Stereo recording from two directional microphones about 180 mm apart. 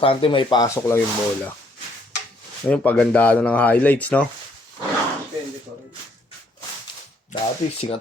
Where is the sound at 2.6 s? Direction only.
5° left (ahead or behind).